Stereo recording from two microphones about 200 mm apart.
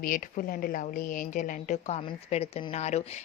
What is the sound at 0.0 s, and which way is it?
A woman's voice, 45° left (ahead or behind).